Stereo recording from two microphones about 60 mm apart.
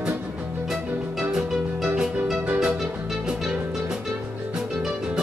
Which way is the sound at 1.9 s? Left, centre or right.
Right.